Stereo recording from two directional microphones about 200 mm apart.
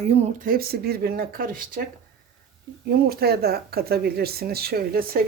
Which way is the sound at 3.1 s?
50° right (ahead or behind).